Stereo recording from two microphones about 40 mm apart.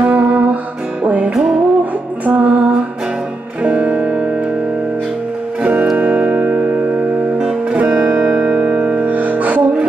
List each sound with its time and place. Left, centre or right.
0.0 s music: right
1.3 s music: centre
2.3 s female singing: right
3.6 s music: right
5.6 s music: right
7.7 s music: right